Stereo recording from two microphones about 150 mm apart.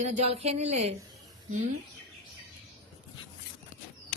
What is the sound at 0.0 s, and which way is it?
Speech, 50° right (ahead or behind).